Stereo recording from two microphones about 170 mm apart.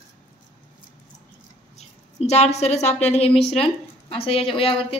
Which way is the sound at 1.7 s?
40° left (ahead or behind).